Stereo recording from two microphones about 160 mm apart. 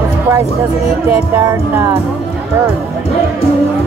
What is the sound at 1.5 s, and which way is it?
Speech, 15° right (ahead or behind).